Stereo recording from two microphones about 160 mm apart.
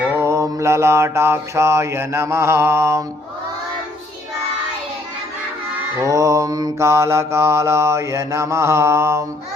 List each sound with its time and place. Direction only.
0.1 s mantra: 15° right (ahead or behind)
6.0 s mantra: 20° right (ahead or behind)